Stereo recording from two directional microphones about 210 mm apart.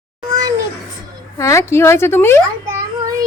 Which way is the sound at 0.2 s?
20° right (ahead or behind).